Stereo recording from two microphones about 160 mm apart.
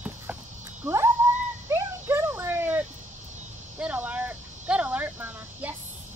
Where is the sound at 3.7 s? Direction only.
10° right (ahead or behind).